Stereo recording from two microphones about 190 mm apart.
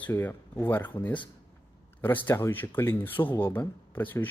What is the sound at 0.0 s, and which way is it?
Speech, 10° left (ahead or behind).